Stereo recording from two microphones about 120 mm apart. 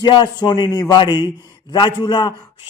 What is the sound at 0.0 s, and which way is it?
Speech, 35° left (ahead or behind).